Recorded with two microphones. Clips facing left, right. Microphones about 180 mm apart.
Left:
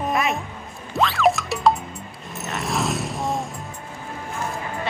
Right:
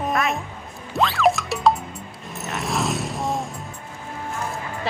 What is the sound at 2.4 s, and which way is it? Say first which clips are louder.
Vehicle: even; centre (ahead or behind).